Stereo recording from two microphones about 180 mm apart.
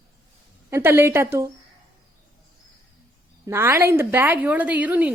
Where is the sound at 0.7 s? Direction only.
15° right (ahead or behind).